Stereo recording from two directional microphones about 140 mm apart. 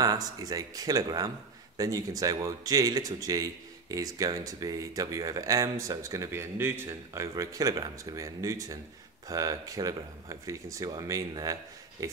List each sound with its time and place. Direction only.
0.0 s speech: 25° right (ahead or behind)